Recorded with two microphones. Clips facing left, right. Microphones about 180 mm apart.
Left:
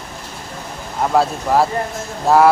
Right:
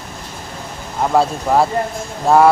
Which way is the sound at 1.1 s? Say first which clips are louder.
Right 1 dB; centre (ahead or behind).